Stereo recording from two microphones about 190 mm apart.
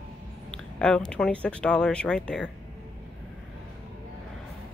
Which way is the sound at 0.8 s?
5° left (ahead or behind).